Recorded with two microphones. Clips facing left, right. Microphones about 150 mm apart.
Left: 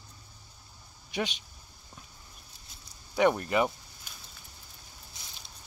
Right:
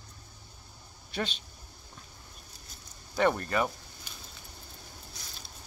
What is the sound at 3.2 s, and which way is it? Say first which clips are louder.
Speech: left 2 dB; 15° left (ahead or behind).